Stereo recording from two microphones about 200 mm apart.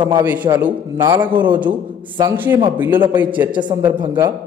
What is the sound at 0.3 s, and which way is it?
A man's voice, 10° right (ahead or behind).